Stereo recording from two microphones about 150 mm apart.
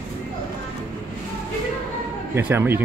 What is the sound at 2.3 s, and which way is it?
Speech, 15° right (ahead or behind).